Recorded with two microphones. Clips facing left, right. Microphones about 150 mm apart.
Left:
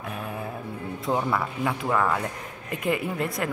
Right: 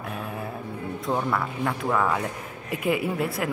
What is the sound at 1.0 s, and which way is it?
Speech, centre (ahead or behind).